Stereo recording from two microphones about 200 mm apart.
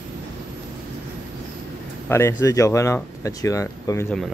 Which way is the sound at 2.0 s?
15° left (ahead or behind).